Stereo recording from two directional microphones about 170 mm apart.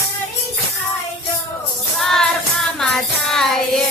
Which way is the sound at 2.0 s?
5° left (ahead or behind).